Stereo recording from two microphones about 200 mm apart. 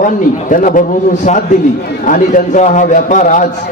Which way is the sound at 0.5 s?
40° left (ahead or behind).